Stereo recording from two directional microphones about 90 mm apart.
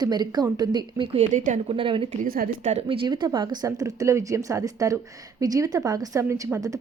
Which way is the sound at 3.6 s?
40° right (ahead or behind).